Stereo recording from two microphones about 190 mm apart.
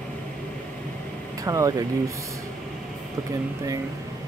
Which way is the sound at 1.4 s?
15° right (ahead or behind).